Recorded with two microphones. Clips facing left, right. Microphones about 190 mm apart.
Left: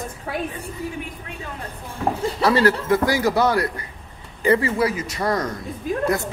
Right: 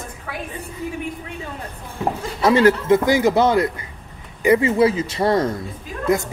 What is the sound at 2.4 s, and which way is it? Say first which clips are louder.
Speech: right 4 dB; 20° right (ahead or behind).